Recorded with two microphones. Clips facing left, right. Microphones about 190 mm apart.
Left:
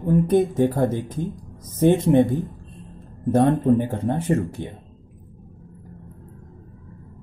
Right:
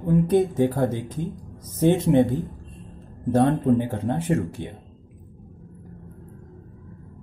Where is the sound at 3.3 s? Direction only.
15° left (ahead or behind).